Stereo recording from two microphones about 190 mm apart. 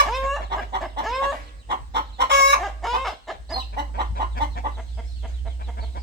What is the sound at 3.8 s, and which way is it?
Chicken, 60° right (ahead or behind).